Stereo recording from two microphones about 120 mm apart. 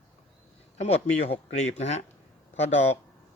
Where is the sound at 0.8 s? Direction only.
65° left (ahead or behind).